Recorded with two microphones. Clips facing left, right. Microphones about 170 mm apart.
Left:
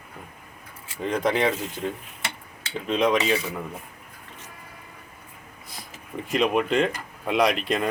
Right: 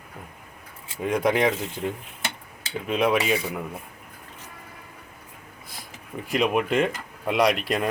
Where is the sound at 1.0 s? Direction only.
10° right (ahead or behind).